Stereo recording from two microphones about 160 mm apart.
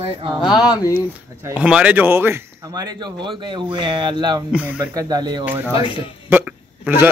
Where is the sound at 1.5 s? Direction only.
5° right (ahead or behind); by 5.5 s 25° right (ahead or behind).